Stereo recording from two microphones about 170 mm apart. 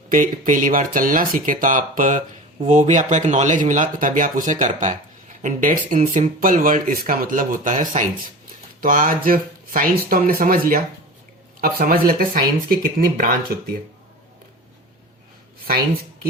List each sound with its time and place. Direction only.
0.1 s speech: 50° right (ahead or behind)